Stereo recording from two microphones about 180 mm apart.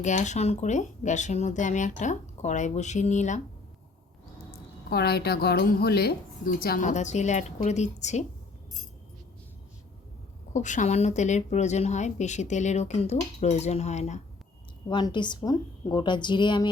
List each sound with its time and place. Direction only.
0.0 s speech: 40° left (ahead or behind)
4.9 s a woman's voice: 65° left (ahead or behind); by 8.2 s 40° left (ahead or behind)
10.5 s speech: 45° left (ahead or behind)
14.8 s a woman's voice: 25° left (ahead or behind)